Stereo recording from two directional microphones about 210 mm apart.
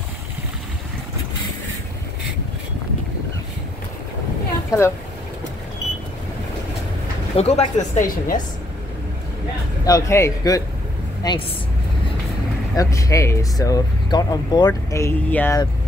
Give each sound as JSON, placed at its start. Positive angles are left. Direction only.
{"t": 4.6, "sound": "speech", "side_deg": 15}
{"t": 7.3, "sound": "speech", "side_deg": 30}
{"t": 9.8, "sound": "speech", "side_deg": 15}
{"t": 12.7, "sound": "speech", "side_deg": 15}